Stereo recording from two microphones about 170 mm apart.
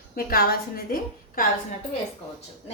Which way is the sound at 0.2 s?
60° left (ahead or behind).